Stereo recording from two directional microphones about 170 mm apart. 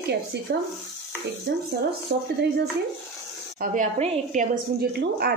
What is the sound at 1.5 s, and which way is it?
Speech, 80° right.